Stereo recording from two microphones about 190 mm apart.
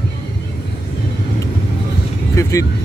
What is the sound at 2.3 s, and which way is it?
Speech, 15° left (ahead or behind).